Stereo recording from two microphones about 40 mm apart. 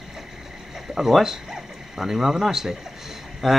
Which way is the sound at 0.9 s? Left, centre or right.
Centre.